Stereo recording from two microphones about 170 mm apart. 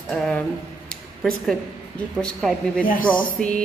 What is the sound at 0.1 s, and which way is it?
Speech, centre (ahead or behind).